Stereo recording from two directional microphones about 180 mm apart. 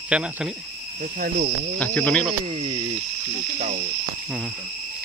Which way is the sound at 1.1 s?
50° right (ahead or behind).